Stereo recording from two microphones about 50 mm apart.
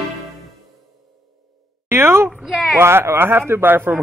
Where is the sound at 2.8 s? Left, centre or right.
Right.